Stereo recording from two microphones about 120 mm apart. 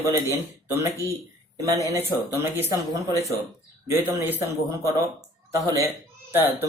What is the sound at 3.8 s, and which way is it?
Speech, 20° right (ahead or behind).